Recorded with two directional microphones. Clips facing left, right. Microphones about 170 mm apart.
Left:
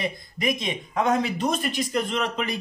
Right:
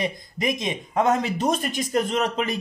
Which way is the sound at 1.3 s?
45° right (ahead or behind).